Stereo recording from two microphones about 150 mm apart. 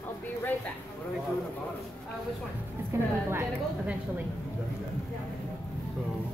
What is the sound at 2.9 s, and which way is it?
Speech, 20° right (ahead or behind).